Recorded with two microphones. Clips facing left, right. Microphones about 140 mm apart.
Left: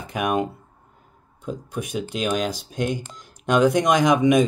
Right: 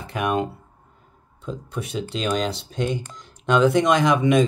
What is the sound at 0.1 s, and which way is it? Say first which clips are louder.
Speech: even; 15° left (ahead or behind).